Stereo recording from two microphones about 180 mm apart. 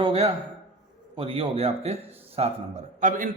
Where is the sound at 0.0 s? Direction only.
35° right (ahead or behind).